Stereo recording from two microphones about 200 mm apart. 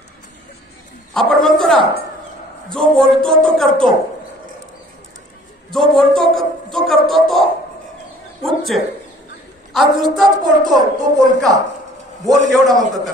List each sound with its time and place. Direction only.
1.1 s a man's voice: centre (ahead or behind)
5.7 s a man's voice: centre (ahead or behind)
10.4 s a woman's voice: 20° right (ahead or behind)
12.4 s a man's voice: centre (ahead or behind)